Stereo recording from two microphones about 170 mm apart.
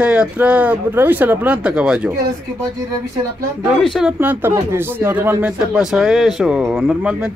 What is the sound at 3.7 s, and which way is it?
Speech, centre (ahead or behind).